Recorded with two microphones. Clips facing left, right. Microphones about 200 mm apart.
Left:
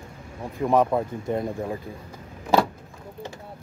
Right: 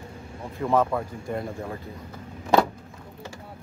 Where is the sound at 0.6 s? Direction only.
15° left (ahead or behind).